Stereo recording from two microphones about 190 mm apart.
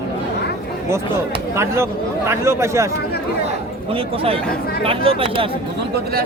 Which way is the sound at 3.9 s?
30° right (ahead or behind).